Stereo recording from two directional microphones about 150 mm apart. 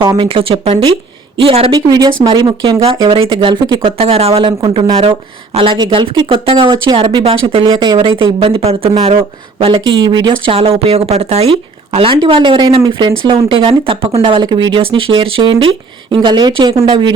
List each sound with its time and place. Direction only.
0.2 s a woman's voice: 40° right (ahead or behind)